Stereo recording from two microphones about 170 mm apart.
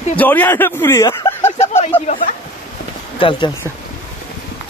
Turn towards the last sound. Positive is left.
turn(degrees=30)  # may be behind; listen again after turning